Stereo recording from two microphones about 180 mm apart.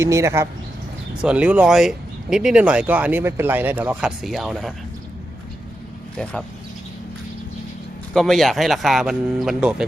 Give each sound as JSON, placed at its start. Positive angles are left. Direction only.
{"t": 0.0, "sound": "speech", "side_deg": -15}
{"t": 8.1, "sound": "speech", "side_deg": 0}